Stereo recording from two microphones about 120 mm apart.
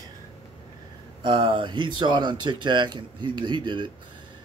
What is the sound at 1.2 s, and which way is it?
Speech, 45° right (ahead or behind).